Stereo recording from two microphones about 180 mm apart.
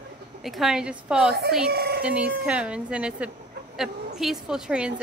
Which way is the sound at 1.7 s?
60° right (ahead or behind).